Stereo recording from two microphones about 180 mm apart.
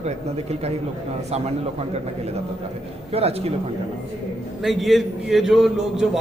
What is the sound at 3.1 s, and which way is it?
Speech, 35° right (ahead or behind).